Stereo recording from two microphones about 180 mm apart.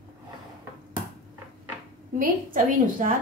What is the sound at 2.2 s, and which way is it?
Speech, 50° right (ahead or behind).